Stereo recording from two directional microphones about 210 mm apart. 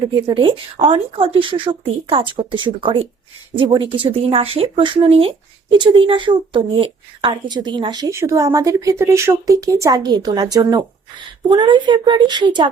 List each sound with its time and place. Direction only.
0.3 s a woman's voice: 25° right (ahead or behind)